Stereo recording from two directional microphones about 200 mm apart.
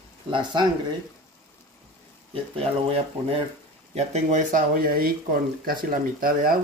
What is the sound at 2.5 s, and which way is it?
A man's voice, 30° right (ahead or behind).